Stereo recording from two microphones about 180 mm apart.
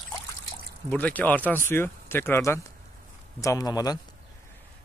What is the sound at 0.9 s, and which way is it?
A man's voice, 10° left (ahead or behind).